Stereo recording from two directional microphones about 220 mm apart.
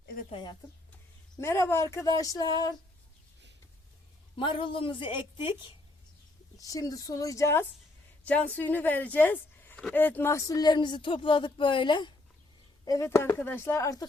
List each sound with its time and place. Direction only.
0.3 s a woman's voice: 20° left (ahead or behind)
4.4 s a woman's voice: 20° left (ahead or behind)